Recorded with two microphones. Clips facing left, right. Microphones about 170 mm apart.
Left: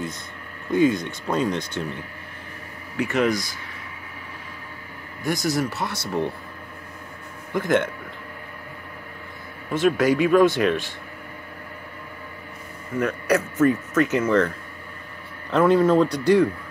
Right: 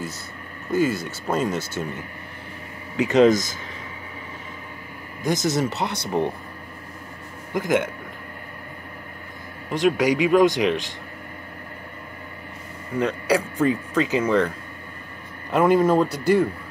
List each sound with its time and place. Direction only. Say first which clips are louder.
0.7 s speech: left 2 dB; 5° right (ahead or behind)
3.0 s speech: right 6 dB; 20° right (ahead or behind)
5.2 s speech: right 1 dB; 20° right (ahead or behind)
7.5 s speech: left 1 dB; 10° right (ahead or behind)
9.7 s speech: even; 15° right (ahead or behind)
13.0 s speech: even; 10° right (ahead or behind)
15.5 s speech: even; 10° right (ahead or behind)